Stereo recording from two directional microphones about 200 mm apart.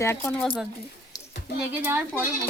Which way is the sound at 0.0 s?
15° left (ahead or behind).